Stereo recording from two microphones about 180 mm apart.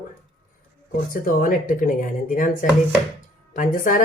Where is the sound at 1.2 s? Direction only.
50° left (ahead or behind).